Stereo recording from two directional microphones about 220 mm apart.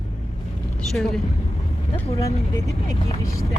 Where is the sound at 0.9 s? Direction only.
Centre (ahead or behind).